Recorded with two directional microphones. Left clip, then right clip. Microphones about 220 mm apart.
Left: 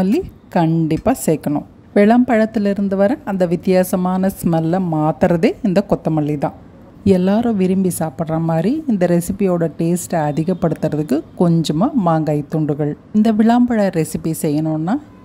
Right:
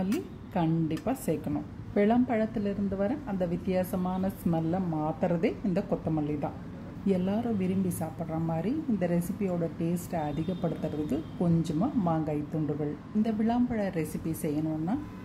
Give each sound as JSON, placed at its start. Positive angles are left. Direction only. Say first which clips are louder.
{"t": 0.0, "sound": "a woman's voice", "louder": "left 14 dB", "side_deg": 45}